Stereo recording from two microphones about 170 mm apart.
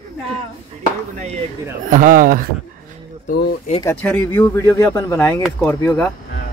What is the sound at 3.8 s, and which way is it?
Speech, 15° left (ahead or behind).